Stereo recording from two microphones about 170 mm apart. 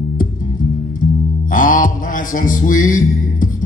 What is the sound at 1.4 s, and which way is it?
Music, 50° left (ahead or behind).